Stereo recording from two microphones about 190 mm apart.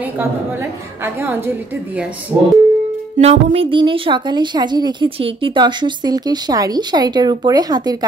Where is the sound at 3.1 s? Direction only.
35° right (ahead or behind).